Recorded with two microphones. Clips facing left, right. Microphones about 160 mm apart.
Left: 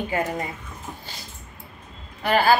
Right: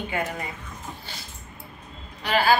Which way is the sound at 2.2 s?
50° left (ahead or behind).